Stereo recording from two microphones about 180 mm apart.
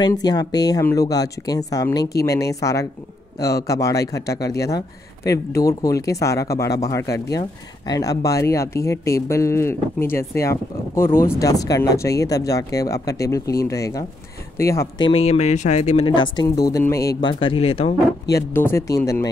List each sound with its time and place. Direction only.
0.0 s a man's voice: 20° left (ahead or behind)
16.4 s speech: 20° left (ahead or behind)
18.3 s a man's voice: 15° left (ahead or behind)